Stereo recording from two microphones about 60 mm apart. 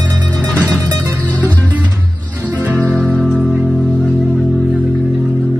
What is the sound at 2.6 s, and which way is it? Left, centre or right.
Music, right.